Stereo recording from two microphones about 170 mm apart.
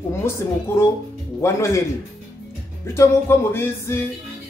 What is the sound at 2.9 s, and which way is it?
A man's voice, 15° left (ahead or behind).